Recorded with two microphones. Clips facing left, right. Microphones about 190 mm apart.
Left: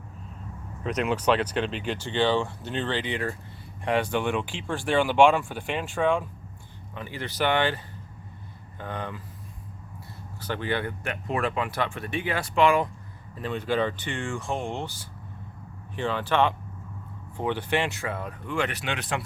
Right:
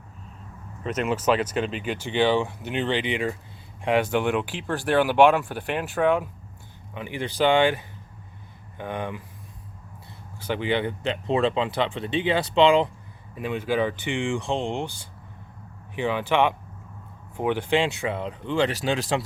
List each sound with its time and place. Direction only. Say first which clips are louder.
0.9 s speech: right 1 dB; centre (ahead or behind)
2.0 s speech: right 3 dB; 15° right (ahead or behind)
6.9 s speech: right 4 dB; 15° right (ahead or behind)
10.4 s speech: right 4 dB; 15° right (ahead or behind)
16.0 s speech: right 2 dB; 10° right (ahead or behind); by 19.2 s 25° right (ahead or behind)